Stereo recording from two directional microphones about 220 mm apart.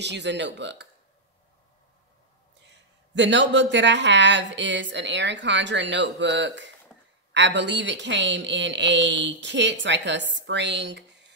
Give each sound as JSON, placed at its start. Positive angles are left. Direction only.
{"t": 0.0, "sound": "speech", "side_deg": -50}
{"t": 3.2, "sound": "speech", "side_deg": -55}